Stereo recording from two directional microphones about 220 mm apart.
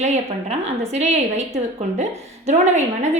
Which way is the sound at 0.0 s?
30° right (ahead or behind).